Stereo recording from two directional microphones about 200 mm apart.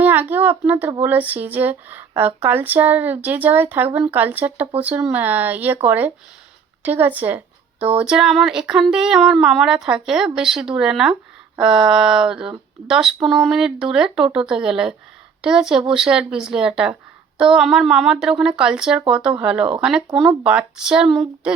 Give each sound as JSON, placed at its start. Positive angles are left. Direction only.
{"t": 0.0, "sound": "speech", "side_deg": -10}